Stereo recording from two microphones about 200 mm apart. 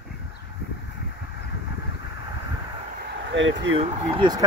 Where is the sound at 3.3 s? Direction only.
70° right (ahead or behind).